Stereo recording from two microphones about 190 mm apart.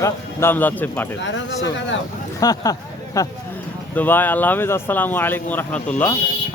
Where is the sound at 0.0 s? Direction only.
15° left (ahead or behind).